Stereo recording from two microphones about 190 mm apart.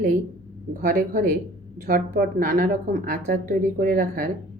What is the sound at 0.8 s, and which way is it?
A woman's voice, 45° right (ahead or behind).